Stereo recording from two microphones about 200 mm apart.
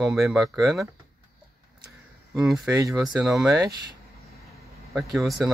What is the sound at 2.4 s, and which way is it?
Speech, 5° right (ahead or behind).